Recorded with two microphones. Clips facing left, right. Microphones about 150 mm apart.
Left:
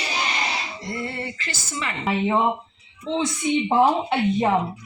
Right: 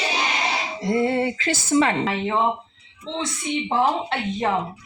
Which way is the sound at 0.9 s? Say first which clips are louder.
Right 11 dB; 90° right.